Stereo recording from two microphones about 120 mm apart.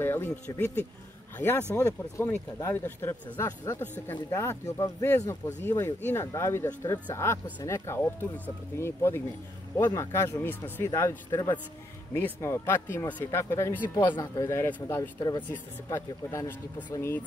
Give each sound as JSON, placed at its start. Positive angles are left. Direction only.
{"t": 0.0, "sound": "speech", "side_deg": 20}
{"t": 1.8, "sound": "speech", "side_deg": 20}
{"t": 13.8, "sound": "speech", "side_deg": 35}
{"t": 15.1, "sound": "speech", "side_deg": 40}
{"t": 15.5, "sound": "speech", "side_deg": 25}